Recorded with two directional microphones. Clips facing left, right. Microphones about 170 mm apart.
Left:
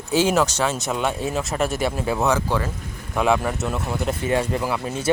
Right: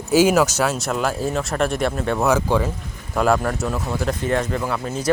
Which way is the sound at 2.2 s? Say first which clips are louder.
Right 4 dB; 10° right (ahead or behind).